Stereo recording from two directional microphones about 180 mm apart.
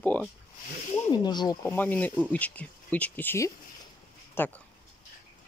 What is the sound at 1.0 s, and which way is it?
Speech, 25° left (ahead or behind).